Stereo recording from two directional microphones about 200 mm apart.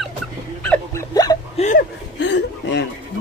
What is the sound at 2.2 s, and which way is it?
Chuckle, 60° left (ahead or behind).